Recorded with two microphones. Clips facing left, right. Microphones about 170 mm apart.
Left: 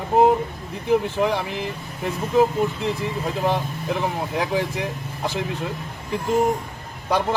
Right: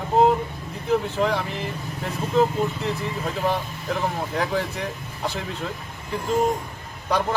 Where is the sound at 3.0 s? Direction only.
15° left (ahead or behind).